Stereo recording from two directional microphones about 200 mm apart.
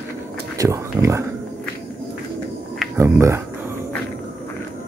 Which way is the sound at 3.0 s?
15° right (ahead or behind).